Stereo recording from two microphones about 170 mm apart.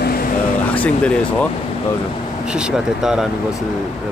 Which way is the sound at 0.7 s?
10° left (ahead or behind).